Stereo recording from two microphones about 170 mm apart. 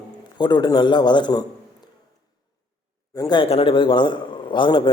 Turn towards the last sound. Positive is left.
turn(degrees=30)  # may be behind; listen again after turning